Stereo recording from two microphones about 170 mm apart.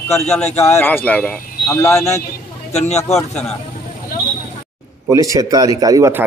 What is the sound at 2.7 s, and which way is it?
Speech, 40° left (ahead or behind).